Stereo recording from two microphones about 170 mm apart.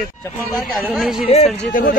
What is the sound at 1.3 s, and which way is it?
Speech, 35° left (ahead or behind).